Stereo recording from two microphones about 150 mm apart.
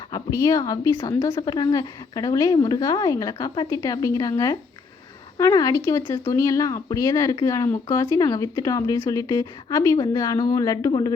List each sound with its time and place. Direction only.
0.1 s speech: 20° left (ahead or behind)